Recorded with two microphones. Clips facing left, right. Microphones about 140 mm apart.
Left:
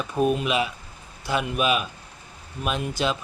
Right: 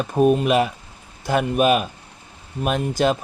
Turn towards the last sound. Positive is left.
turn(degrees=-50)  # may be behind; listen again after turning